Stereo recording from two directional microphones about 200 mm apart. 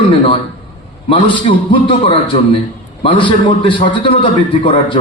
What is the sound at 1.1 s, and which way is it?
A man's voice, 25° left (ahead or behind).